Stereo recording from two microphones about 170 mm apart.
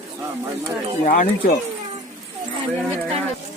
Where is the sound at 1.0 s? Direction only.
55° left (ahead or behind).